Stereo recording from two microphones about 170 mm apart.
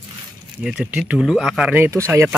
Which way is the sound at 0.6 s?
5° right (ahead or behind).